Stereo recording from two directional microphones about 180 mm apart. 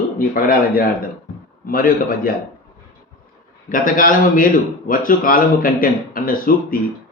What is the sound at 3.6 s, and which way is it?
A man's voice, 50° left (ahead or behind).